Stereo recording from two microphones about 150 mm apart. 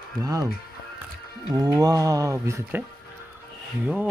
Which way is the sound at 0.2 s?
25° right (ahead or behind).